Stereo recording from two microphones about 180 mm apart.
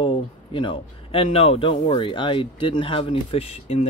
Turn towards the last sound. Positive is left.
turn(degrees=35)  # may be behind; listen again after turning